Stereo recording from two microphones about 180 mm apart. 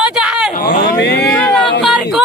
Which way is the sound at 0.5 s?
65° left (ahead or behind).